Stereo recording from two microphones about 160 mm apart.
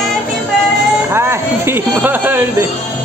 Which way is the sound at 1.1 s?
15° right (ahead or behind).